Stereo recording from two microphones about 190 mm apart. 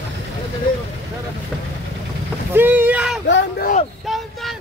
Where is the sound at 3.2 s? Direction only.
65° left (ahead or behind).